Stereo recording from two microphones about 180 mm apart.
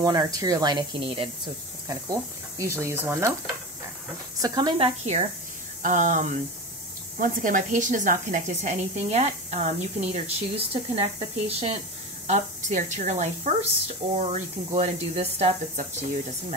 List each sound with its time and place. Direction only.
0.0 s speech: 20° right (ahead or behind)
4.4 s speech: 25° right (ahead or behind)
5.8 s speech: 45° right (ahead or behind)